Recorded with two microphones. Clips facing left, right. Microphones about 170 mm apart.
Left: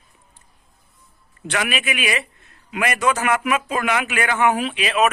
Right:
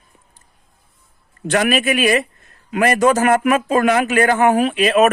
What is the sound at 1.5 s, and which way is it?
A man's voice, 45° right (ahead or behind).